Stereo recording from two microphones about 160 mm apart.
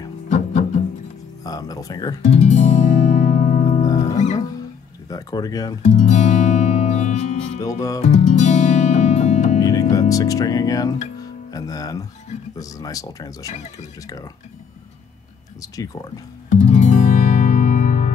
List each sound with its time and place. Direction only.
0.3 s music: 45° left (ahead or behind)
1.4 s music: 25° left (ahead or behind)
2.2 s music: 45° left (ahead or behind)
3.8 s music: 25° left (ahead or behind)
5.1 s speech: 25° left (ahead or behind)
5.9 s guitar: 45° left (ahead or behind)
7.6 s speech: 20° left (ahead or behind)
8.0 s music: 45° left (ahead or behind)
9.6 s speech: 20° left (ahead or behind)
13.5 s speech: 45° left (ahead or behind)
15.6 s speech: 20° left (ahead or behind)
16.4 s music: 50° left (ahead or behind)